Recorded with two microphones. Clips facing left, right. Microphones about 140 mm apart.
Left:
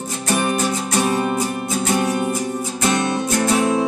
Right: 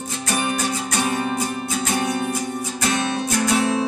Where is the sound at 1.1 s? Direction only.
40° left (ahead or behind).